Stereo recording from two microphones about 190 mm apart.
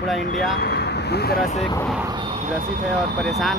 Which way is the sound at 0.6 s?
60° left (ahead or behind).